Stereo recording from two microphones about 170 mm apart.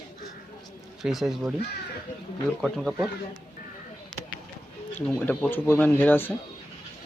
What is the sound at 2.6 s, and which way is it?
Speech, centre (ahead or behind).